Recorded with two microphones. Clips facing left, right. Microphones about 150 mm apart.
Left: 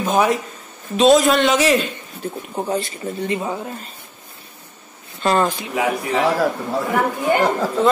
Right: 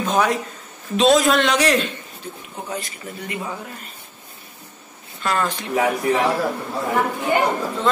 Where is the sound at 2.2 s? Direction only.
45° left (ahead or behind).